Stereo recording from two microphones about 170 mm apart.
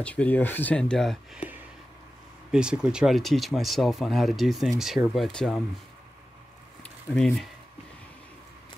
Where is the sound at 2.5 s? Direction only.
5° right (ahead or behind).